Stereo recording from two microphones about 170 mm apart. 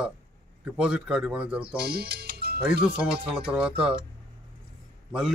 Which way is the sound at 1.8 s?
65° right (ahead or behind).